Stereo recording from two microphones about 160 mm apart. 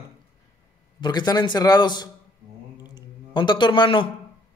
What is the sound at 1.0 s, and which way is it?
Speech, 25° left (ahead or behind).